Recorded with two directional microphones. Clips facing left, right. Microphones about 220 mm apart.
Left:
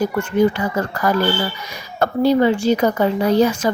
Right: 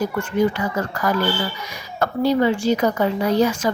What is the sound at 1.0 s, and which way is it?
Speech, 30° left (ahead or behind).